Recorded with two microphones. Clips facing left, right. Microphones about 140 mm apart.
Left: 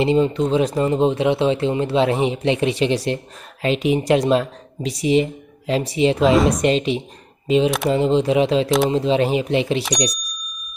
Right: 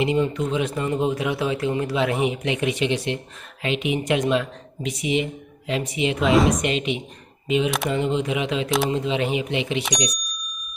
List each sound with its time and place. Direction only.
0.0 s speech: 30° left (ahead or behind)
6.2 s speech: centre (ahead or behind)
6.6 s speech: 35° left (ahead or behind)